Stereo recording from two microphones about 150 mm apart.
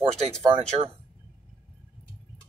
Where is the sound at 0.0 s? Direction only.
45° right (ahead or behind).